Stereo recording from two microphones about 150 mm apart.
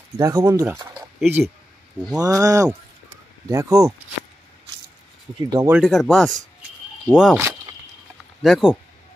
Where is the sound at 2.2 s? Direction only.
25° right (ahead or behind).